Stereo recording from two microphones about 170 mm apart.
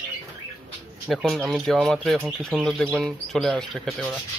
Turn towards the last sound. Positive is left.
turn(degrees=0)  # may be behind; listen again after turning